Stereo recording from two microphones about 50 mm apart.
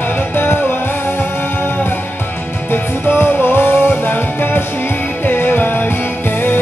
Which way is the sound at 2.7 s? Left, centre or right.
Left.